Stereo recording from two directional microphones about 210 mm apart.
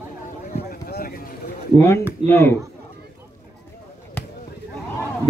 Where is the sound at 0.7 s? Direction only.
45° left (ahead or behind).